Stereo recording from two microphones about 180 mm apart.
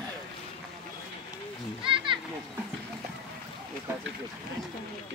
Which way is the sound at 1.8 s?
30° right (ahead or behind).